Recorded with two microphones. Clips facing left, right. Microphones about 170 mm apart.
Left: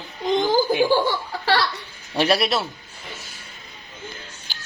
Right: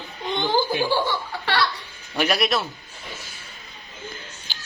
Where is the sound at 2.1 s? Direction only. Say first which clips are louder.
Left 2 dB; 30° left (ahead or behind).